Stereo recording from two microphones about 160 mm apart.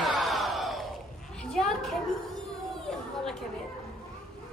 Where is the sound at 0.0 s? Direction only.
Centre (ahead or behind).